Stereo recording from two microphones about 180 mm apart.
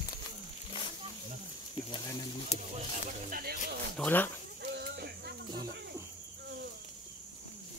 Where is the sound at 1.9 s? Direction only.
25° left (ahead or behind).